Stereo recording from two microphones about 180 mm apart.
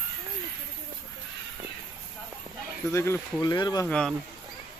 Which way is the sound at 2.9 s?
15° left (ahead or behind).